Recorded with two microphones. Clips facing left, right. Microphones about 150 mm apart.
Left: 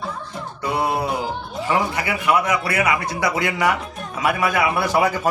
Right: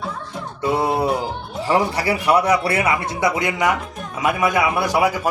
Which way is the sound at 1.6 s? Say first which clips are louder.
Right 3 dB; 35° right (ahead or behind).